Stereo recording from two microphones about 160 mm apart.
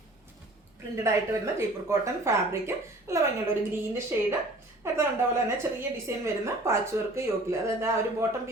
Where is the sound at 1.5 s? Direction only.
15° right (ahead or behind).